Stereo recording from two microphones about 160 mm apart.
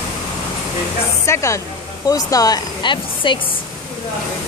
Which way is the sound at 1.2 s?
20° left (ahead or behind).